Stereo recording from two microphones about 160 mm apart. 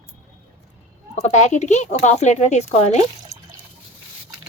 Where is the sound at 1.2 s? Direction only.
45° left (ahead or behind).